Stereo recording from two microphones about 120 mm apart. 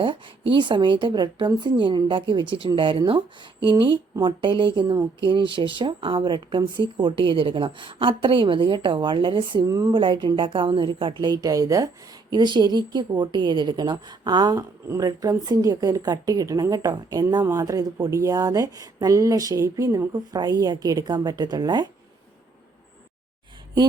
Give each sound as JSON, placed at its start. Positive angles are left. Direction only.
{"t": 0.0, "sound": "a woman's voice", "side_deg": -45}
{"t": 9.6, "sound": "speech", "side_deg": -30}
{"t": 10.0, "sound": "a woman's voice", "side_deg": -45}
{"t": 12.3, "sound": "a woman's voice", "side_deg": -40}